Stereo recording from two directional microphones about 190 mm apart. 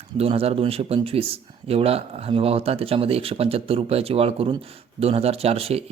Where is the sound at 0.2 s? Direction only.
30° right (ahead or behind).